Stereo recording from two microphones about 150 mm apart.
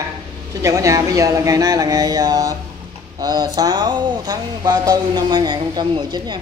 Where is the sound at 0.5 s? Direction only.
20° right (ahead or behind).